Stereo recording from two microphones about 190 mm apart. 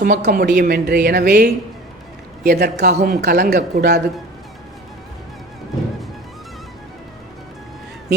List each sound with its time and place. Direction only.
0.0 s a woman's voice: 50° right (ahead or behind)